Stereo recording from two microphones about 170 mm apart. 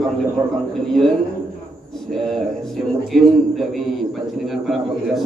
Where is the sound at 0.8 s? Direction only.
Centre (ahead or behind).